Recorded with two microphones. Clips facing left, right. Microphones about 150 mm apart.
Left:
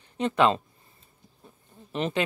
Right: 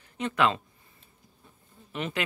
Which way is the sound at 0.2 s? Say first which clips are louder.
Left 4 dB; 30° left (ahead or behind).